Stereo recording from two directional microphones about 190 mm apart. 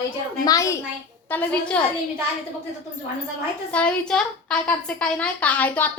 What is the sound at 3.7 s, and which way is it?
A child's voice, 5° left (ahead or behind).